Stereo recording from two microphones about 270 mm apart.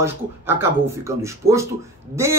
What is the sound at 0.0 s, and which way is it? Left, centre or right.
A man's voice, centre.